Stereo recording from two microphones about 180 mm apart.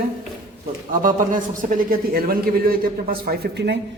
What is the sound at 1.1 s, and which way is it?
A man's voice, 45° right (ahead or behind).